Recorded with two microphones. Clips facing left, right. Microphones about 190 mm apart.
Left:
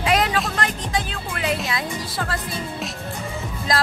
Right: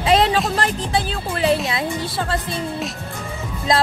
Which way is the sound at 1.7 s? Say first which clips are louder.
Right 4 dB; 25° right (ahead or behind).